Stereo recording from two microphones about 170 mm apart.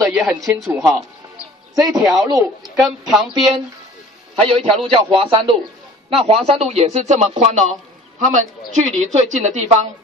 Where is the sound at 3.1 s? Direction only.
Centre (ahead or behind).